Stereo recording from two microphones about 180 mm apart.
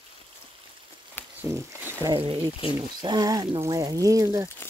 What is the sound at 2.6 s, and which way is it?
Speech, 30° left (ahead or behind).